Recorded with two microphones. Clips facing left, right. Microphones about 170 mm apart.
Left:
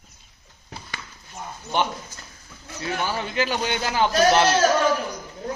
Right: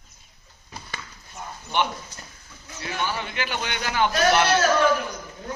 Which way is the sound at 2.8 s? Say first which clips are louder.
Left 2 dB; 35° left (ahead or behind).